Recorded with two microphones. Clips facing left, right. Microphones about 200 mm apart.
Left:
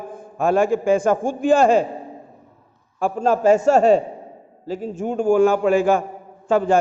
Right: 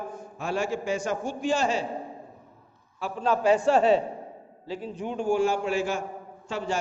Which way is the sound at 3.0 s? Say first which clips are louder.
Left 7 dB; 45° left (ahead or behind).